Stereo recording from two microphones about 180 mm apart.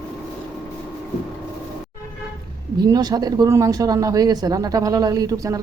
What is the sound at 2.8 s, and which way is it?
Speech, 20° right (ahead or behind).